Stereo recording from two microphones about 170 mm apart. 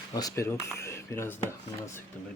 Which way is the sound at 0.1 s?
20° left (ahead or behind).